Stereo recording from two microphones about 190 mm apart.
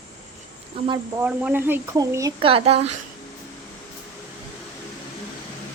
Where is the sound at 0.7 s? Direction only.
30° right (ahead or behind).